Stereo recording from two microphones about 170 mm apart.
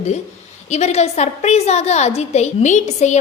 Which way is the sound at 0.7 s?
40° left (ahead or behind).